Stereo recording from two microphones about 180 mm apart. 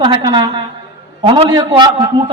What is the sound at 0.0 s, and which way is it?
A woman's voice, 25° right (ahead or behind).